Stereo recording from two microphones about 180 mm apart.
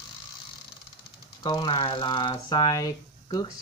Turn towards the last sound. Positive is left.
turn(degrees=20)  # may be behind; listen again after turning